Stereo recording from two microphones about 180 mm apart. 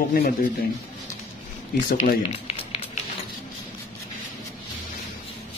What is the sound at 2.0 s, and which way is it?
Run, 35° left (ahead or behind).